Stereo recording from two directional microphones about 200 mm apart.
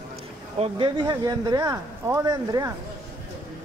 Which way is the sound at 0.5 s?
25° right (ahead or behind).